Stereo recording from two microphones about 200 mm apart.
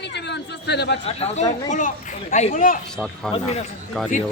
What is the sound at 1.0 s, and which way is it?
Speech, 30° left (ahead or behind).